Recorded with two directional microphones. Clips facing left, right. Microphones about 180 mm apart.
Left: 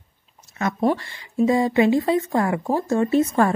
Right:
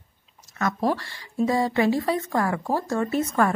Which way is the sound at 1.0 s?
20° left (ahead or behind).